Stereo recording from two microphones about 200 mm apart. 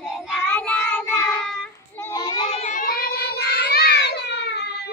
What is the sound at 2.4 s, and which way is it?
Child singing, 30° left (ahead or behind).